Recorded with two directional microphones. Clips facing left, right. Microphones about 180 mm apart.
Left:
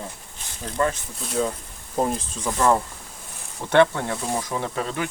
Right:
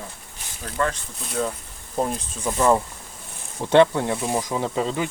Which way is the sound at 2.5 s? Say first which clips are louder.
Right 1 dB; 15° right (ahead or behind).